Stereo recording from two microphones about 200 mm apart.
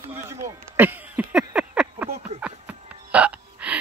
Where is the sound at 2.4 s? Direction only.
5° right (ahead or behind).